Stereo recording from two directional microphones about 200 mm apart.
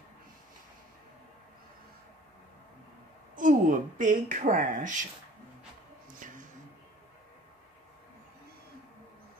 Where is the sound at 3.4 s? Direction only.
40° right (ahead or behind).